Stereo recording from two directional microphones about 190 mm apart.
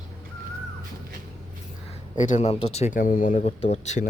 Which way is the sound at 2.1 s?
40° left (ahead or behind).